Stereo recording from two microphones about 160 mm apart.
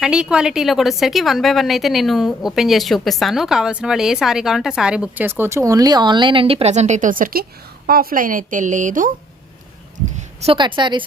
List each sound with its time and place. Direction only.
0.0 s a woman's voice: 5° right (ahead or behind); by 9.1 s 55° right (ahead or behind)
10.2 s a woman's voice: 35° right (ahead or behind)